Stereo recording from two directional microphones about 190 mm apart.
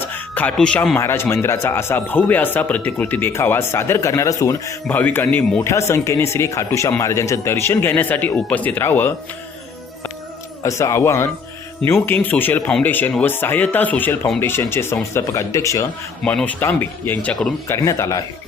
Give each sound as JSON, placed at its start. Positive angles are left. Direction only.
{"t": 0.0, "sound": "speech", "side_deg": 10}
{"t": 10.6, "sound": "speech", "side_deg": 15}
{"t": 16.2, "sound": "speech", "side_deg": 5}